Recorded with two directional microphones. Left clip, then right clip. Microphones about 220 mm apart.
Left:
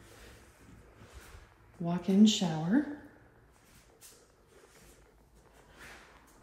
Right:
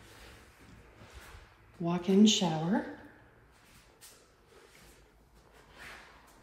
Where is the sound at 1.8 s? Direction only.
15° right (ahead or behind).